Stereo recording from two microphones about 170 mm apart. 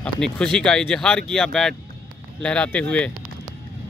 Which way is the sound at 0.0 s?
5° left (ahead or behind).